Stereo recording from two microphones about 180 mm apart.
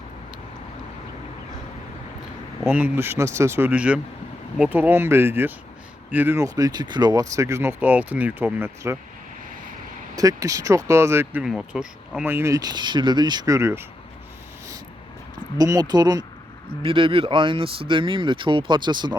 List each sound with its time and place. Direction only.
2.6 s speech: 10° right (ahead or behind)
10.2 s speech: 20° right (ahead or behind)
15.5 s speech: 20° right (ahead or behind)